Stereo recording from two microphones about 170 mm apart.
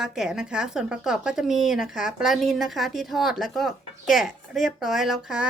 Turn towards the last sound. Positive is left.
turn(degrees=-5)  # may be behind; listen again after turning